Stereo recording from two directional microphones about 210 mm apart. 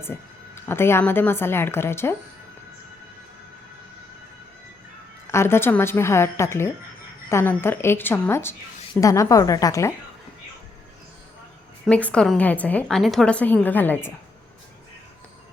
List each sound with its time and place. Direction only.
0.0 s a woman's voice: 10° left (ahead or behind)
5.3 s a woman's voice: 10° left (ahead or behind)
11.9 s a woman's voice: 5° left (ahead or behind)